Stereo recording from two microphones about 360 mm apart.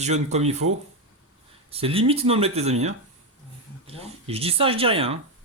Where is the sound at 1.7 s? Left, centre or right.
Centre.